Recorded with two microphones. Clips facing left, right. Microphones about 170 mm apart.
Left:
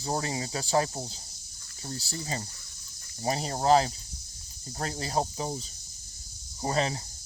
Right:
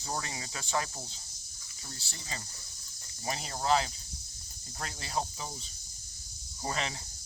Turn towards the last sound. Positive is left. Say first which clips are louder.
# left 7 dB
turn(degrees=35)  # may be behind; listen again after turning